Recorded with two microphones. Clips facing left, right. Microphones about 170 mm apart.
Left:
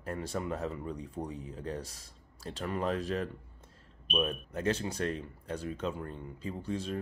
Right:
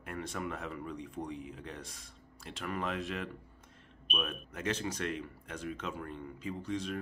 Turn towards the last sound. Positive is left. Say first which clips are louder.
# left 1 dB
turn(degrees=35)  # may be behind; listen again after turning